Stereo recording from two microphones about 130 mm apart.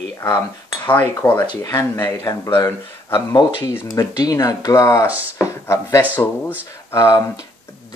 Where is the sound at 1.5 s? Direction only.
30° left (ahead or behind).